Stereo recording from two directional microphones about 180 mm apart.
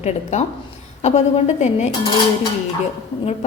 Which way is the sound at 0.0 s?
40° left (ahead or behind).